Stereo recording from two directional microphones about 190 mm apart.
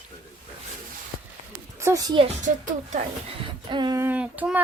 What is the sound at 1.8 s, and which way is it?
Speech, 15° right (ahead or behind).